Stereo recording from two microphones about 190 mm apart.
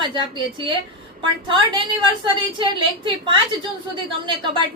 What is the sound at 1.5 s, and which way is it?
A woman's voice, 25° right (ahead or behind).